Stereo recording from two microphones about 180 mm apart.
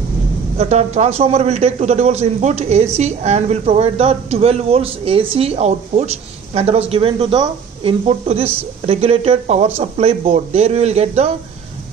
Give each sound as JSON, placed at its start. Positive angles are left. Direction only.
{"t": 0.6, "sound": "a man's voice", "side_deg": -40}